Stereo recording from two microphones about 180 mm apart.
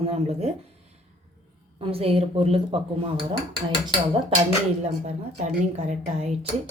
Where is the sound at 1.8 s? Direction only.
30° right (ahead or behind).